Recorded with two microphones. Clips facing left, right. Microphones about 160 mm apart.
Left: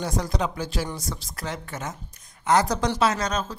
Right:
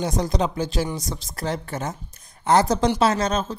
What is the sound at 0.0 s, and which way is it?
Speech, 20° right (ahead or behind).